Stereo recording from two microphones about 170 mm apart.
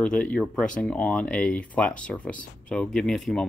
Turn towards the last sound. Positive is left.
turn(degrees=0)  # may be behind; listen again after turning